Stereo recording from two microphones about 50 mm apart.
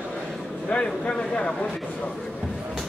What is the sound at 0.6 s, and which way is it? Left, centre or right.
Speech, left.